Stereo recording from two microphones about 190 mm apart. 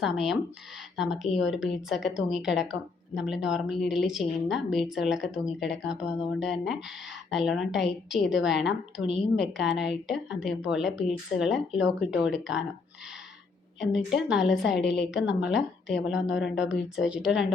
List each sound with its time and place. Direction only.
0.0 s a woman's voice: centre (ahead or behind)
13.9 s a woman's voice: 5° right (ahead or behind)
14.8 s a woman's voice: 65° left (ahead or behind)
15.1 s a woman's voice: 5° right (ahead or behind)